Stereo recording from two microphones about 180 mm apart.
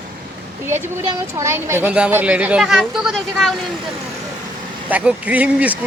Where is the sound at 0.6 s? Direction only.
15° right (ahead or behind).